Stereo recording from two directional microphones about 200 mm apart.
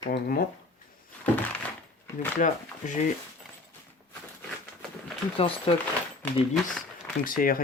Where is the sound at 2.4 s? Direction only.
40° left (ahead or behind).